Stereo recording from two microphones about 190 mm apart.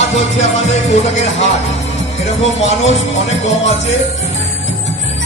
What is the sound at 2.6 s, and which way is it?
Music, 35° left (ahead or behind).